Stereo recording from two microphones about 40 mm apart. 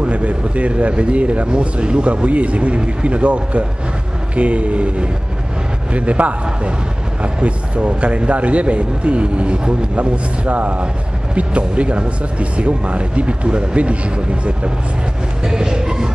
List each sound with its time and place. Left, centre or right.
0.0 s a man's voice: right
15.4 s music: centre